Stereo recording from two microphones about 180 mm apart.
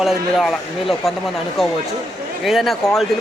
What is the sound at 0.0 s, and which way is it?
A man's voice, centre (ahead or behind).